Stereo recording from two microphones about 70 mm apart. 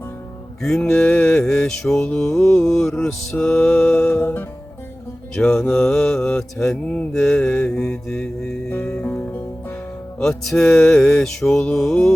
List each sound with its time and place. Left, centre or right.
0.8 s mantra: centre
3.9 s music: left
5.4 s mantra: centre
8.7 s music: left
10.2 s mantra: centre